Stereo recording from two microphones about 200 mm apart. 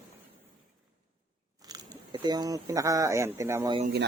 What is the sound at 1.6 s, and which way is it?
Speech, 20° right (ahead or behind).